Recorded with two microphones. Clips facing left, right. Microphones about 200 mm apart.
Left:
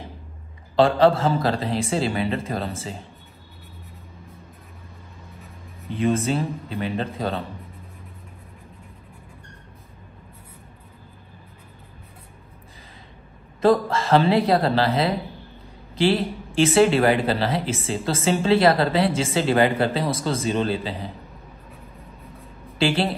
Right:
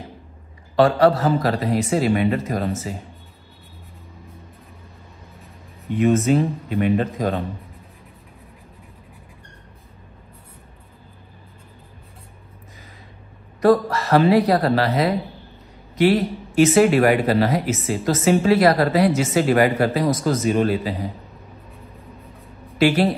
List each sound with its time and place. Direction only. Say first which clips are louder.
0.7 s speech: right 1 dB; 25° left (ahead or behind)
5.9 s speech: right 5 dB; 30° left (ahead or behind)
13.6 s speech: right 2 dB; 25° left (ahead or behind)
16.0 s speech: right 3 dB; 30° left (ahead or behind)
22.8 s speech: right 4 dB; 30° left (ahead or behind)